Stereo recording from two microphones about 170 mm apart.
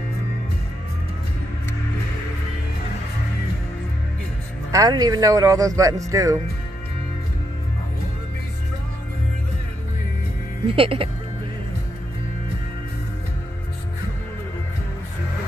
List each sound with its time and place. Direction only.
4.7 s speech: 20° right (ahead or behind)
10.7 s speech: 30° right (ahead or behind)